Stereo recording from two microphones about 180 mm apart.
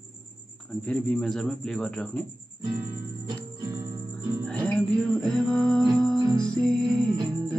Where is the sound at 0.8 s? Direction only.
5° left (ahead or behind).